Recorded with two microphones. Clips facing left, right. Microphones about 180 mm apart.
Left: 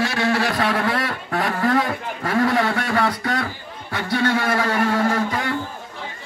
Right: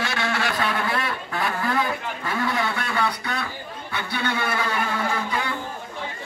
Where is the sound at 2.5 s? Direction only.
80° left.